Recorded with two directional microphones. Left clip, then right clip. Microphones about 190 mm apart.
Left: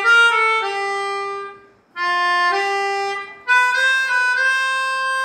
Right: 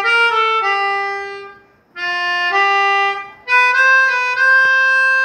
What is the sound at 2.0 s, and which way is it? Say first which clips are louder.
Music: left 1 dB; 10° right (ahead or behind).